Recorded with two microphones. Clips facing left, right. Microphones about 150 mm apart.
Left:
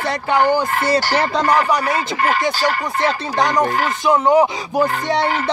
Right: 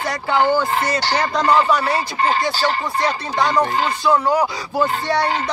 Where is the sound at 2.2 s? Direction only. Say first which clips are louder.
Even; 25° right (ahead or behind).